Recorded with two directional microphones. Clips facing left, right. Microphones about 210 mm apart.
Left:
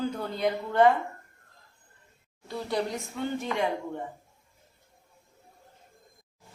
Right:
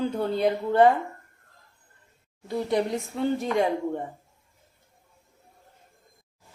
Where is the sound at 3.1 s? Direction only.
35° right (ahead or behind).